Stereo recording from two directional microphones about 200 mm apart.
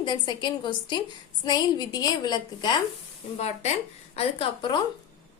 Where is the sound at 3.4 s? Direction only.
35° left (ahead or behind).